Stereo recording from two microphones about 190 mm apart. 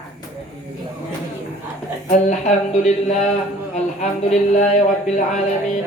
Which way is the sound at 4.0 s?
35° left (ahead or behind).